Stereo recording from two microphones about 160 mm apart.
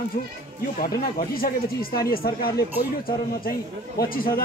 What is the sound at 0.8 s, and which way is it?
Speech, 60° left (ahead or behind).